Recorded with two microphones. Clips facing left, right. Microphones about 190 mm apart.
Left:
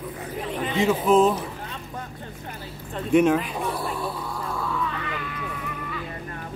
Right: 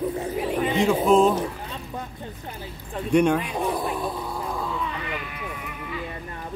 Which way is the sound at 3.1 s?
Centre (ahead or behind).